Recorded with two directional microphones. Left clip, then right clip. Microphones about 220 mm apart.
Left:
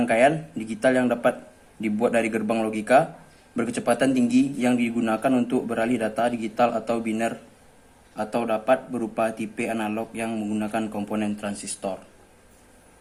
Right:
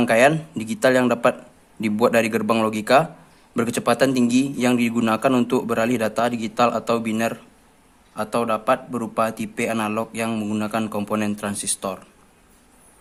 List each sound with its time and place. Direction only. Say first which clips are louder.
0.0 s a man's voice: right 3 dB; 45° right (ahead or behind)